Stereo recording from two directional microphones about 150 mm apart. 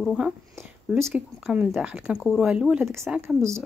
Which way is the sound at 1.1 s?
5° right (ahead or behind).